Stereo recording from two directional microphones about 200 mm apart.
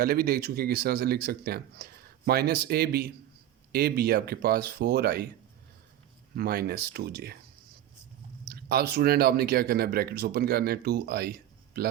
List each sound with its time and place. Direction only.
0.0 s speech: 50° right (ahead or behind)
6.3 s speech: 50° right (ahead or behind)
8.4 s speech: 50° right (ahead or behind)